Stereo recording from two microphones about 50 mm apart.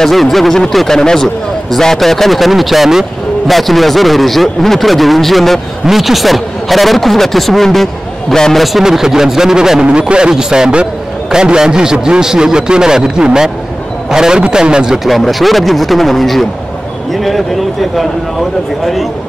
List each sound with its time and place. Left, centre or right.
0.0 s a man's voice: centre
8.7 s a man's voice: centre
15.0 s a man's voice: centre